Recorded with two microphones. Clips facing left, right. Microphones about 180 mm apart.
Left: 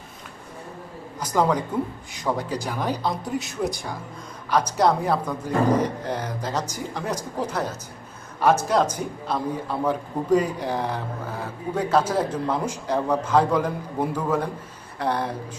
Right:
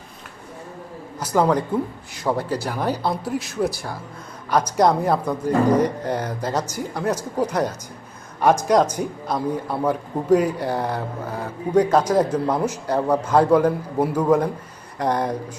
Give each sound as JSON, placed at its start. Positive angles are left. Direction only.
{"t": 1.2, "sound": "a man's voice", "side_deg": -5}
{"t": 2.4, "sound": "speech", "side_deg": 15}
{"t": 2.6, "sound": "speech", "side_deg": -10}
{"t": 4.5, "sound": "a man's voice", "side_deg": -10}